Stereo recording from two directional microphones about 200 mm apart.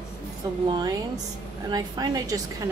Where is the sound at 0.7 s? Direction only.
20° right (ahead or behind).